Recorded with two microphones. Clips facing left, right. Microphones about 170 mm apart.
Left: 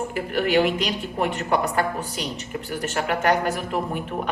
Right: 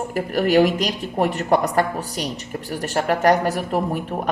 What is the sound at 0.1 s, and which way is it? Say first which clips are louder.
Speech: right 5 dB; 40° right (ahead or behind).